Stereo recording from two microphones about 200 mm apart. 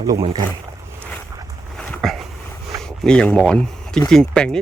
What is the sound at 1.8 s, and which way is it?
Dog, centre (ahead or behind).